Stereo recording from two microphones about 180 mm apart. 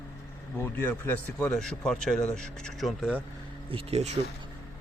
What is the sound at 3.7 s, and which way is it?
Speech, 35° right (ahead or behind).